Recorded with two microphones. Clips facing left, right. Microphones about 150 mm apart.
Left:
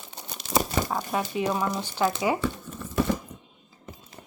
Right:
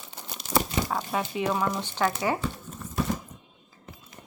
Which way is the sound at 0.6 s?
40° left (ahead or behind).